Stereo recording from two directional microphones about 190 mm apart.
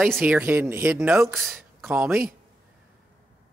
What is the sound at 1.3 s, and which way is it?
Speech, centre (ahead or behind).